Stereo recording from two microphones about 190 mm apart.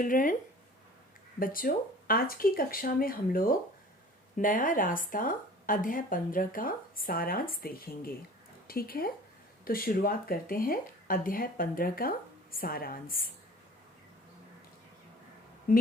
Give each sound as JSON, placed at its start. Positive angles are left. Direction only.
{"t": 0.0, "sound": "speech", "side_deg": 45}
{"t": 1.4, "sound": "speech", "side_deg": 50}
{"t": 15.7, "sound": "speech", "side_deg": 45}